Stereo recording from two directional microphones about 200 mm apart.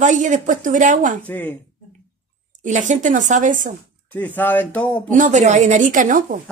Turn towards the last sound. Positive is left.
turn(degrees=-40)  # may be behind; listen again after turning